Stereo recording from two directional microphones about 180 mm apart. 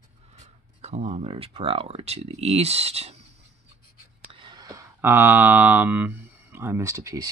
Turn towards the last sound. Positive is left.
turn(degrees=-15)  # may be behind; listen again after turning